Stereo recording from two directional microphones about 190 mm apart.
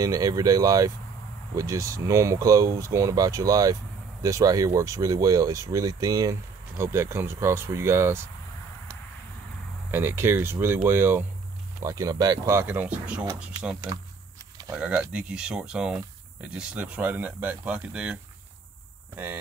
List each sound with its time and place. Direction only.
0.0 s speech: 20° right (ahead or behind)
9.8 s speech: 10° right (ahead or behind)
14.8 s speech: 5° right (ahead or behind)